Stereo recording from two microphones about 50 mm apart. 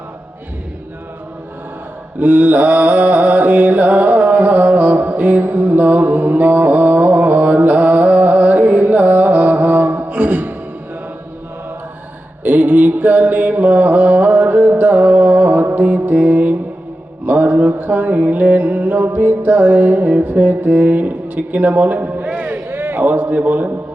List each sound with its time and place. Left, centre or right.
2.1 s mantra: right
12.5 s mantra: right
22.7 s a man's voice: right